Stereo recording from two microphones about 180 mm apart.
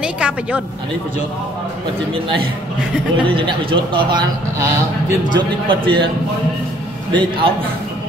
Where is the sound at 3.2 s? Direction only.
25° right (ahead or behind).